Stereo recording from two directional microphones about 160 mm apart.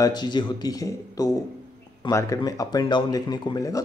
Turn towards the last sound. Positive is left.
turn(degrees=25)  # may be behind; listen again after turning